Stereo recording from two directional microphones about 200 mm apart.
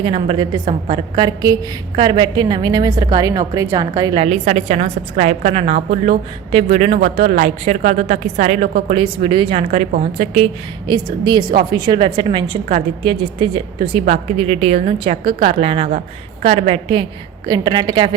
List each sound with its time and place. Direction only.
0.0 s a woman's voice: 25° right (ahead or behind)